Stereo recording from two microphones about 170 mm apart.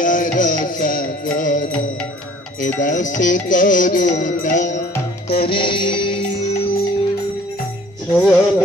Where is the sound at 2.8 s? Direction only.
50° left (ahead or behind).